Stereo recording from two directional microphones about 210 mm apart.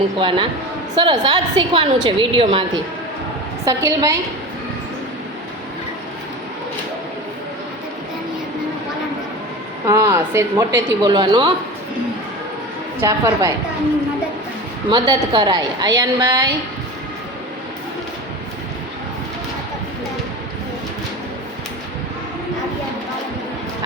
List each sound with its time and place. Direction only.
0.2 s a woman's voice: 25° right (ahead or behind)
3.7 s speech: 15° right (ahead or behind)
9.8 s speech: 15° right (ahead or behind)
13.0 s speech: 15° right (ahead or behind)
14.8 s a woman's voice: 20° right (ahead or behind)